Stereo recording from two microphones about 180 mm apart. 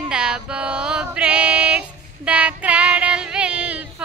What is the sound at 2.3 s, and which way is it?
Child singing, 5° right (ahead or behind).